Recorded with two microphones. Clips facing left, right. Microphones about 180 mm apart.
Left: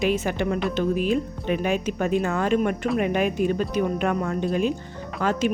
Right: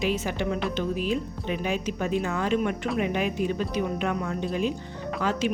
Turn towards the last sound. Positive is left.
turn(degrees=50)  # may be behind; listen again after turning